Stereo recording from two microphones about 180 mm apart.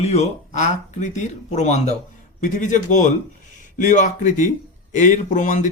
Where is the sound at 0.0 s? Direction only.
40° left (ahead or behind).